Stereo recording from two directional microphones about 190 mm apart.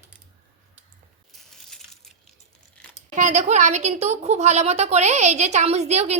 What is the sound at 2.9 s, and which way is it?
Speech, 40° right (ahead or behind).